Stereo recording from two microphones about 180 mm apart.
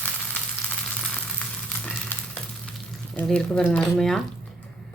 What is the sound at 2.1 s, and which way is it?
Frying, 10° left (ahead or behind).